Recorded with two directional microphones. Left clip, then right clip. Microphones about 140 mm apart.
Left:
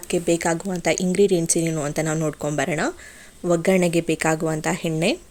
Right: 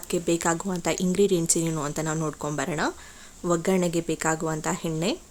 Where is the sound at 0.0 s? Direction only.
10° left (ahead or behind).